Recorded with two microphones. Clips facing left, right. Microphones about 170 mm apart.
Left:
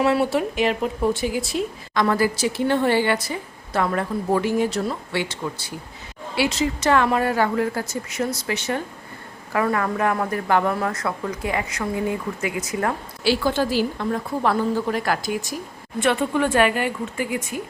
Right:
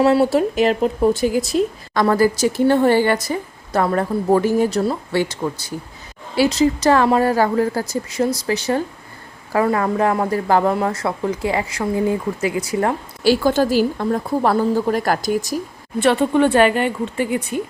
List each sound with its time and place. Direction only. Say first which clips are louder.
0.0 s speech: right 5 dB; 35° right (ahead or behind)
13.2 s speech: right 5 dB; 45° right (ahead or behind); by 17.6 s 30° right (ahead or behind)